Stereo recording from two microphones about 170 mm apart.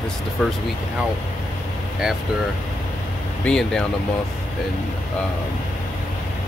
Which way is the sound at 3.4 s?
5° left (ahead or behind).